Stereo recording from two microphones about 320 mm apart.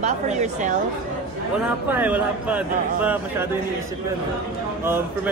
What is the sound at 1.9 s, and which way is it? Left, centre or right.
Speech, centre.